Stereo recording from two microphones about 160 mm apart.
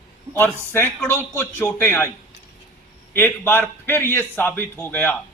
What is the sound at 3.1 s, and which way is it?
A man's voice, 10° left (ahead or behind).